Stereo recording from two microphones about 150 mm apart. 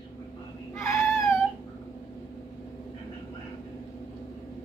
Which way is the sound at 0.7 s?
20° left (ahead or behind).